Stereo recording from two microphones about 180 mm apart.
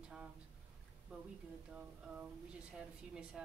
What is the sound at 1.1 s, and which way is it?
A woman's voice, centre (ahead or behind).